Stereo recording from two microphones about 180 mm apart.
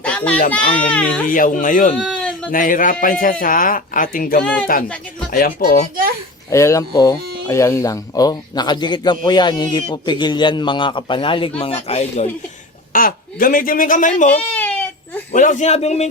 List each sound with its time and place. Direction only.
0.0 s a sound: 5° left (ahead or behind)
0.5 s speech: 5° left (ahead or behind)
1.3 s speech: 50° left (ahead or behind)
2.0 s a sound: 5° left (ahead or behind)
2.5 s speech: 50° left (ahead or behind)
6.5 s speech: 15° left (ahead or behind); by 12.3 s 35° left (ahead or behind)
12.9 s speech: 50° left (ahead or behind)
14.5 s baby cry: 10° left (ahead or behind)
15.3 s speech: 45° left (ahead or behind)